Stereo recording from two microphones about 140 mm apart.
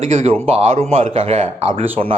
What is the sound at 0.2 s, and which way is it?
Speech, 45° right (ahead or behind).